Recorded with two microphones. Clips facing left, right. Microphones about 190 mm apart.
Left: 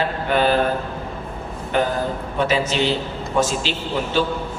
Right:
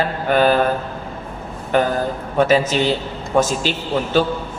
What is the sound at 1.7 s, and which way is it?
Speech, 45° right (ahead or behind).